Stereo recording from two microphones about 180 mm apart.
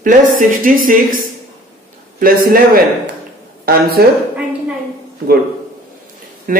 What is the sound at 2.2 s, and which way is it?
Speech, 55° right (ahead or behind).